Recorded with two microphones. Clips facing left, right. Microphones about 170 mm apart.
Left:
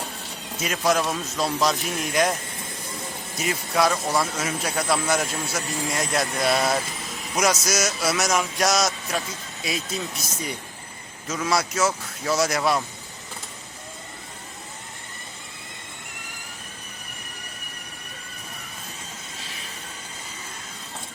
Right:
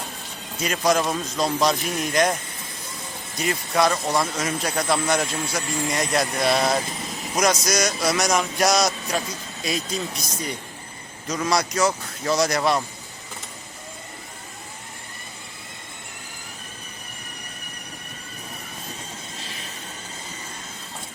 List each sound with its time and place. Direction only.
0.5 s speech: 5° left (ahead or behind)
3.3 s speech: 5° left (ahead or behind)